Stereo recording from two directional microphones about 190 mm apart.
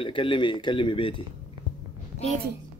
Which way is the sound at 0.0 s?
25° left (ahead or behind).